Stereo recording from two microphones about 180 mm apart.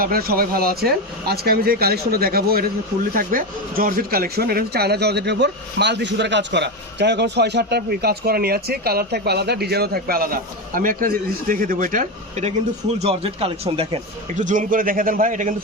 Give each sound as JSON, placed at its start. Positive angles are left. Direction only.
{"t": 0.0, "sound": "speech", "side_deg": -55}
{"t": 14.4, "sound": "a man's voice", "side_deg": -45}